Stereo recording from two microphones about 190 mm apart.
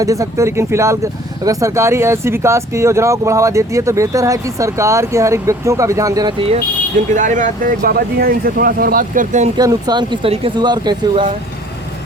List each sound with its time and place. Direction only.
0.0 s speech: 15° right (ahead or behind)
7.1 s speech: 40° right (ahead or behind)
9.6 s speech: 20° right (ahead or behind)